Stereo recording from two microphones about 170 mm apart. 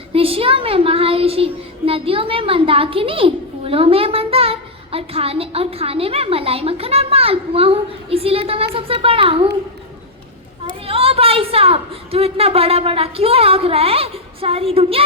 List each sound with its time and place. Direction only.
0.1 s a child's voice: 35° right (ahead or behind)
10.8 s a woman's voice: 35° right (ahead or behind)